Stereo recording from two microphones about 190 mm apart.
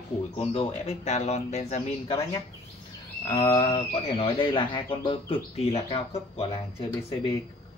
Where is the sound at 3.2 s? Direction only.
20° left (ahead or behind).